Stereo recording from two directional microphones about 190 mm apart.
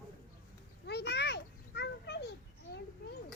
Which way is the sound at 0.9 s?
60° left (ahead or behind).